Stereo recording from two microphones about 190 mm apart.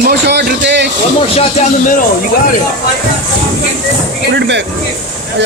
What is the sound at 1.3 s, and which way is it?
Speech, 35° left (ahead or behind).